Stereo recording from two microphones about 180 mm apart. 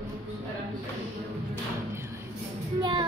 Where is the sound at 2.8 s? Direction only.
25° right (ahead or behind).